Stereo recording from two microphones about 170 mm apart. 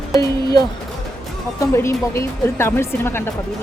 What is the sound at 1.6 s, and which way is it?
Speech, 15° left (ahead or behind).